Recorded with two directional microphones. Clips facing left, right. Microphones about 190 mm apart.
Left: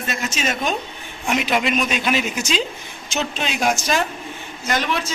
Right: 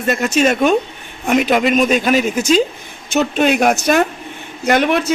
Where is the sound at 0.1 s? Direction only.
50° right (ahead or behind).